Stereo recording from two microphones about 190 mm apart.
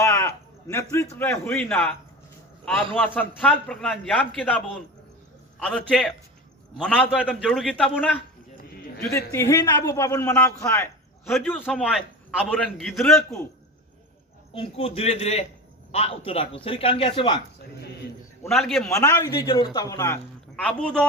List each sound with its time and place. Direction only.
0.0 s a sound: 15° left (ahead or behind)
1.2 s speech: 10° left (ahead or behind)
3.2 s a man's voice: 5° left (ahead or behind)
5.5 s a man's voice: 5° left (ahead or behind)
9.3 s a man's voice: 15° left (ahead or behind)
14.5 s a man's voice: 30° left (ahead or behind)
18.4 s a man's voice: centre (ahead or behind)
18.9 s speech: 15° left (ahead or behind)
20.7 s a man's voice: 5° left (ahead or behind)